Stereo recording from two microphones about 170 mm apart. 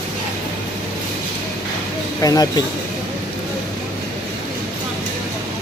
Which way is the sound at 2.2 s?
20° left (ahead or behind).